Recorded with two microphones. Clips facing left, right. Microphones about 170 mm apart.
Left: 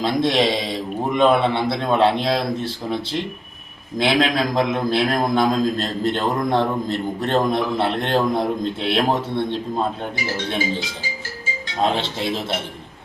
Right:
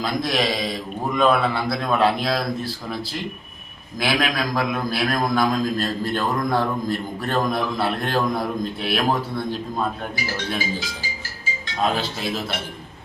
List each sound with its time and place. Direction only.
0.0 s a man's voice: 25° left (ahead or behind)
11.8 s a man's voice: 25° left (ahead or behind)